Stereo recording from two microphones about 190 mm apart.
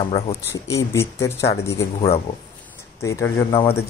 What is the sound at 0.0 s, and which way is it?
Speech, 25° left (ahead or behind).